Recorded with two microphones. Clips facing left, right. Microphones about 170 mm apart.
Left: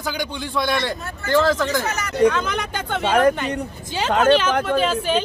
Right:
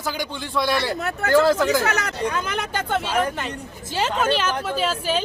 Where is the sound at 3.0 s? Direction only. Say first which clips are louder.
Left 10 dB; 60° left (ahead or behind).